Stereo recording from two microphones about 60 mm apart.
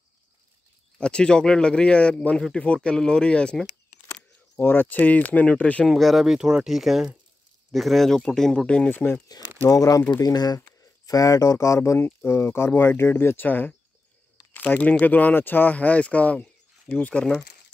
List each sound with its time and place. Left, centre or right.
0.9 s speech: centre
4.1 s speech: left
5.9 s speech: centre
8.6 s speech: left
8.9 s speech: left
9.7 s speech: left
12.3 s speech: left